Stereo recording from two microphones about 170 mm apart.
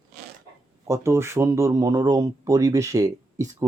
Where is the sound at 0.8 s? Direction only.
15° right (ahead or behind).